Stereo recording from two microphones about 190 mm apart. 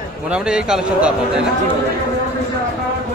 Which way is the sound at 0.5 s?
5° right (ahead or behind).